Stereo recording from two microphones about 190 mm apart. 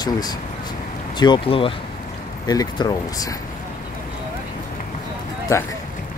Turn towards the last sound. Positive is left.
turn(degrees=15)  # may be behind; listen again after turning